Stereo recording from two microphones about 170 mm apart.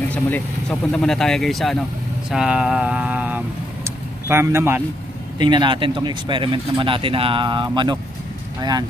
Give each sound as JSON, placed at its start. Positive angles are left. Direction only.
{"t": 0.1, "sound": "speech", "side_deg": 5}
{"t": 2.3, "sound": "vehicle", "side_deg": -5}
{"t": 5.4, "sound": "speech", "side_deg": -25}